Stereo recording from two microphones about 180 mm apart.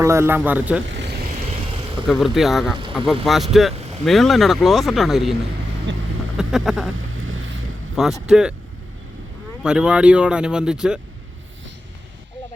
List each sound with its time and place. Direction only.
0.0 s speech: 15° right (ahead or behind)
0.9 s vehicle: 75° right (ahead or behind)
2.0 s speech: centre (ahead or behind)
5.9 s speech: 90° right
6.3 s a sound: centre (ahead or behind)
6.9 s vehicle: 90° right
8.0 s speech: 5° right (ahead or behind)
9.6 s speech: 5° right (ahead or behind)